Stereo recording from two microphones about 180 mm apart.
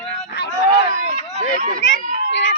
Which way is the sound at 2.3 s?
80° left.